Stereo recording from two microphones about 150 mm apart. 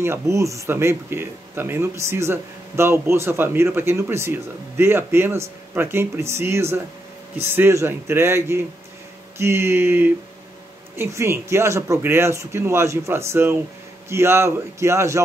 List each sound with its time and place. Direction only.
0.0 s speech: 20° right (ahead or behind)